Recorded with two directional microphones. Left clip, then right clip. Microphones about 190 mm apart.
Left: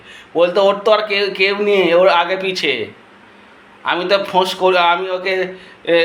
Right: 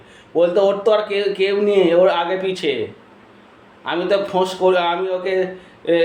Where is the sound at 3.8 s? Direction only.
15° right (ahead or behind).